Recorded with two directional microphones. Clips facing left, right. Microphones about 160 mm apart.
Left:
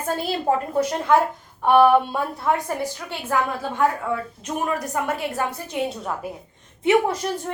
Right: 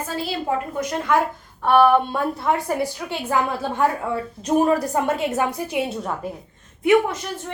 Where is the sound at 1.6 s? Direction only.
15° left (ahead or behind).